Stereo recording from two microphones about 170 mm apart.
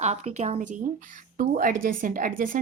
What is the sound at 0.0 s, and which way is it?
Speech, 40° right (ahead or behind).